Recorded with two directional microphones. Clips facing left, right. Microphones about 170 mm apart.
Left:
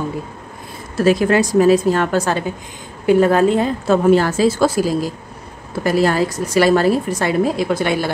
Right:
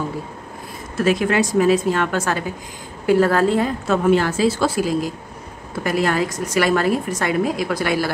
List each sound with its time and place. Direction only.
0.9 s a woman's voice: 35° left (ahead or behind)
3.1 s a woman's voice: 20° left (ahead or behind)
3.8 s a woman's voice: 35° left (ahead or behind)